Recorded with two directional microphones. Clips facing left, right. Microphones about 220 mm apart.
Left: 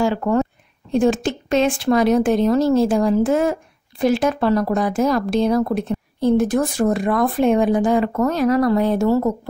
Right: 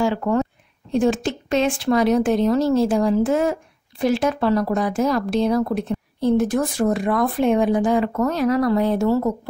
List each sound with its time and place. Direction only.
0.0 s speech: 45° left (ahead or behind)